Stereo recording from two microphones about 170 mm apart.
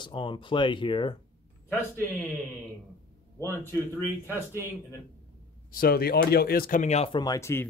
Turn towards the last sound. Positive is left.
turn(degrees=15)  # may be behind; listen again after turning